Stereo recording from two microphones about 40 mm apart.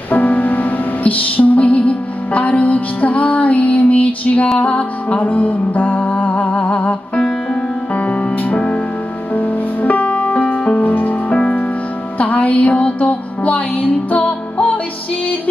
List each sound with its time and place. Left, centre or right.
0.1 s music: left
10.8 s music: left